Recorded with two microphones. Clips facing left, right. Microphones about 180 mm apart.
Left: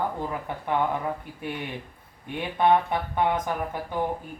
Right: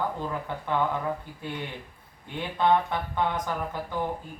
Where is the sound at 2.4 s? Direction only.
15° left (ahead or behind).